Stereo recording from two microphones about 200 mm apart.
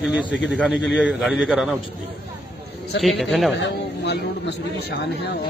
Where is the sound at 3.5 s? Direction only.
60° left (ahead or behind).